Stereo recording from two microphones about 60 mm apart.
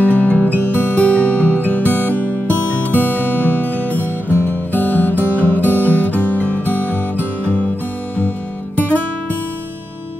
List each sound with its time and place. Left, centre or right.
0.0 s music: left
2.2 s music: right
2.8 s music: left